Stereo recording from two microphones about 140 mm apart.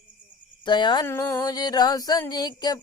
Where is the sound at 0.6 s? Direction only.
35° left (ahead or behind).